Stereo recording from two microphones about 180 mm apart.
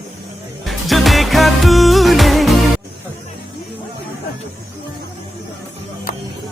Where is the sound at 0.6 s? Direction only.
Centre (ahead or behind).